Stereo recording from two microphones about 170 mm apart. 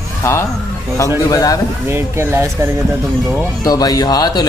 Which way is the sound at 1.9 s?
15° right (ahead or behind).